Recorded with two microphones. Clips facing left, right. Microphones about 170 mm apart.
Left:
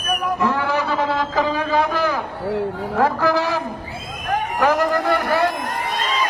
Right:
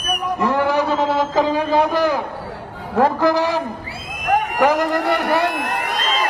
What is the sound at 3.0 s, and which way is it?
A man's voice, 15° right (ahead or behind).